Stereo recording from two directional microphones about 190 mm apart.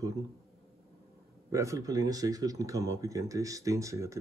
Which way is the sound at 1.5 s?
15° right (ahead or behind).